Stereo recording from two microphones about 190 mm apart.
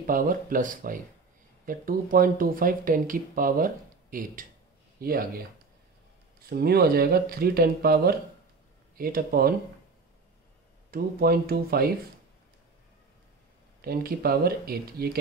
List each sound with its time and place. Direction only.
0.0 s speech: 45° right (ahead or behind)
6.5 s speech: 55° right (ahead or behind)
10.9 s speech: 50° right (ahead or behind)
13.7 s speech: 55° right (ahead or behind)